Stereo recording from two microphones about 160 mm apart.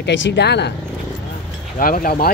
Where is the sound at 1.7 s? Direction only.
65° left (ahead or behind).